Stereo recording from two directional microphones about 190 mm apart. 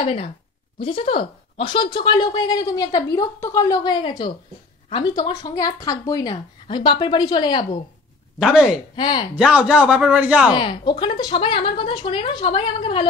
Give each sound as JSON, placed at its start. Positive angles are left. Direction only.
{"t": 0.0, "sound": "speech", "side_deg": 30}
{"t": 8.4, "sound": "speech", "side_deg": -5}
{"t": 8.9, "sound": "speech", "side_deg": 25}
{"t": 9.3, "sound": "speech", "side_deg": -5}
{"t": 10.5, "sound": "speech", "side_deg": 25}